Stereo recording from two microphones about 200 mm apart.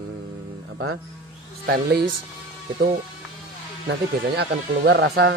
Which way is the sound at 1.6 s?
50° right (ahead or behind).